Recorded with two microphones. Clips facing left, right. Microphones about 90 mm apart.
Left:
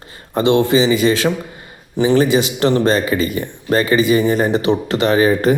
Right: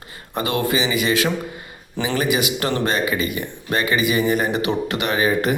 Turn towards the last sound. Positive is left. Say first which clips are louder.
# left 6 dB
turn(degrees=35)  # may be behind; listen again after turning